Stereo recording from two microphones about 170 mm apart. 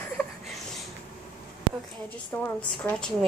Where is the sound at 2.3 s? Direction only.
15° left (ahead or behind).